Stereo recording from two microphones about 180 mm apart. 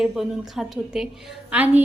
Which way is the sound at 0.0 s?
Centre (ahead or behind).